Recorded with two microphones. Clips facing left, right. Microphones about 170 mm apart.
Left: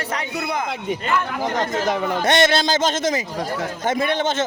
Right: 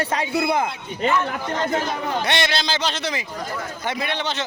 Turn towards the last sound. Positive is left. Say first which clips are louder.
# left 5 dB
turn(degrees=45)  # may be behind; listen again after turning